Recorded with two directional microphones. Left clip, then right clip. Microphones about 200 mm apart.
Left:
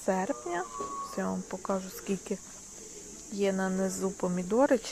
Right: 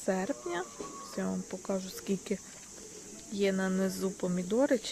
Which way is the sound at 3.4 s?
5° right (ahead or behind).